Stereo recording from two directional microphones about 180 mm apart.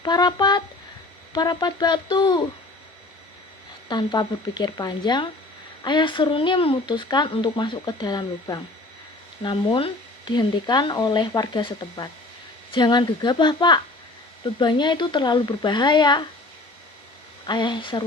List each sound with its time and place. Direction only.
0.0 s speech: 25° left (ahead or behind)
3.8 s speech: 25° left (ahead or behind)
17.4 s speech: 25° left (ahead or behind)